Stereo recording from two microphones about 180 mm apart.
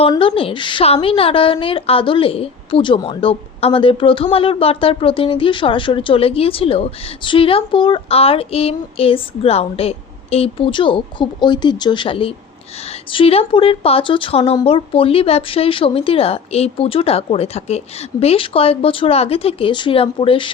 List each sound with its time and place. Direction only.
0.1 s a woman's voice: 30° left (ahead or behind)